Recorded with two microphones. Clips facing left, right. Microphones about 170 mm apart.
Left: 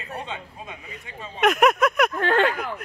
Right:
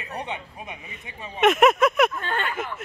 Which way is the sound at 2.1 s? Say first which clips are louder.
Left 8 dB; 90° left.